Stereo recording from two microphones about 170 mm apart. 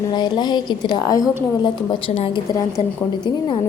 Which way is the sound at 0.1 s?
25° left (ahead or behind).